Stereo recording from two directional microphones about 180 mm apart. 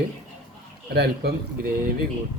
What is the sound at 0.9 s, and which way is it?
Speech, 60° right (ahead or behind).